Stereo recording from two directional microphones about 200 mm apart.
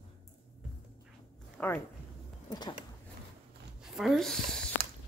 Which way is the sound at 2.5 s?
20° left (ahead or behind).